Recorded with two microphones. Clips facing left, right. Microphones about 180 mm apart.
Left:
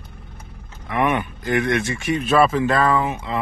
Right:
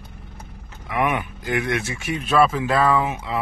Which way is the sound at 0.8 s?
5° right (ahead or behind).